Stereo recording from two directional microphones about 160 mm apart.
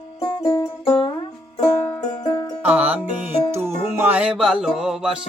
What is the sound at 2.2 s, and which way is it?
Music, 25° left (ahead or behind).